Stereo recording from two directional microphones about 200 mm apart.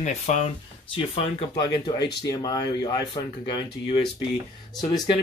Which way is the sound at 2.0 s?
55° left (ahead or behind).